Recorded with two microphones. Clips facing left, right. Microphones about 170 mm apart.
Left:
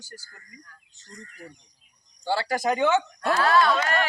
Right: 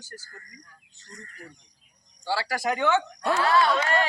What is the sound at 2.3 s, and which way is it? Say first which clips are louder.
Speech: left 3 dB; 25° left (ahead or behind).